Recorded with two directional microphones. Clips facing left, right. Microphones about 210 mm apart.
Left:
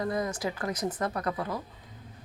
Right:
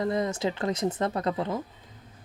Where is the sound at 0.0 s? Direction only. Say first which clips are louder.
Right 3 dB; 25° right (ahead or behind).